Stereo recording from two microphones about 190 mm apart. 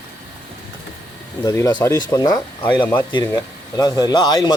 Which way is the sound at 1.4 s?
20° left (ahead or behind).